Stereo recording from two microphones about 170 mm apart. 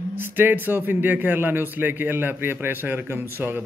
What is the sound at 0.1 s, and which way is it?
Speech, 10° right (ahead or behind).